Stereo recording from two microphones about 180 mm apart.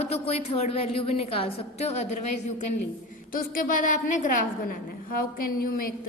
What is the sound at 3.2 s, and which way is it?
A woman's voice, 50° left (ahead or behind).